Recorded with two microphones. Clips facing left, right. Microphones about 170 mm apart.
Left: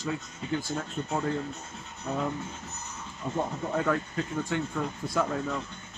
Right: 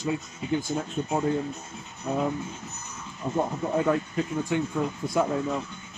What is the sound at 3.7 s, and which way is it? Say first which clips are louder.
Speech: right 4 dB; 20° right (ahead or behind).